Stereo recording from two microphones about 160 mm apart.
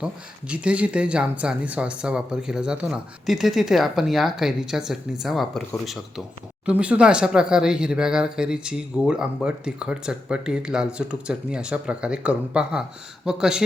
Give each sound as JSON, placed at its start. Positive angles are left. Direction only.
{"t": 0.0, "sound": "speech", "side_deg": -5}